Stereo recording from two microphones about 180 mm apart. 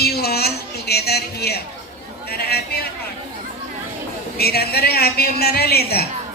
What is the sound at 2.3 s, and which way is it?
Speech, 60° left (ahead or behind).